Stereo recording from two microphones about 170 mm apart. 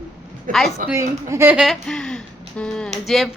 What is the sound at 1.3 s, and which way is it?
Speech, 15° right (ahead or behind).